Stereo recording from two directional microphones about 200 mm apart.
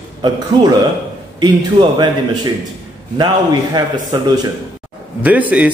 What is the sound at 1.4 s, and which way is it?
Speech, 20° right (ahead or behind).